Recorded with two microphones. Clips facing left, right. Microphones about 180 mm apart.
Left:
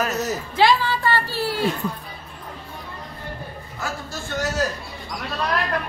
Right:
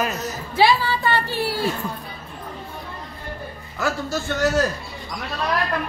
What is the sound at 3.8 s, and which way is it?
Speech, 75° right (ahead or behind).